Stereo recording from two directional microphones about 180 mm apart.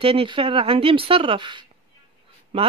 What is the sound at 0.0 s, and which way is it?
Speech, 30° right (ahead or behind).